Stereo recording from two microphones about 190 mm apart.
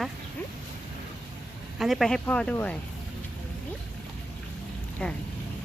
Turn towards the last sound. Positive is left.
turn(degrees=5)  # may be behind; listen again after turning